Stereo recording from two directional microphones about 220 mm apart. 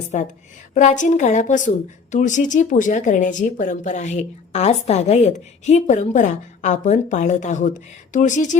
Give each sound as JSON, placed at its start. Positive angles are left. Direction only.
{"t": 0.1, "sound": "a woman's voice", "side_deg": 30}